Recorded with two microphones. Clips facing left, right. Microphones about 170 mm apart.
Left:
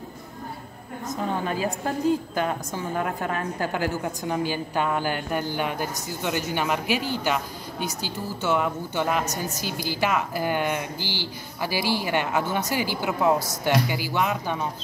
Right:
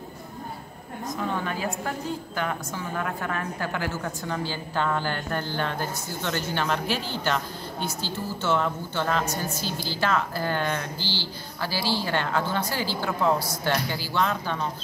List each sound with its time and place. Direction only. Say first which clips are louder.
1.0 s a woman's voice: left 2 dB; 20° left (ahead or behind)